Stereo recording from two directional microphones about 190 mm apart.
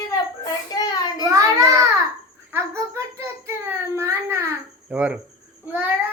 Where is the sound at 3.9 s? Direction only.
15° right (ahead or behind).